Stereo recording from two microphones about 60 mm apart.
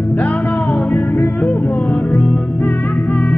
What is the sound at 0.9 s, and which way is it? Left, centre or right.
Music, left.